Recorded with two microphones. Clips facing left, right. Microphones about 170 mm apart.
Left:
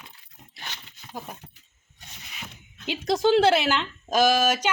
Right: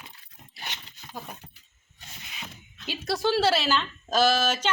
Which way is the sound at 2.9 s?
20° left (ahead or behind).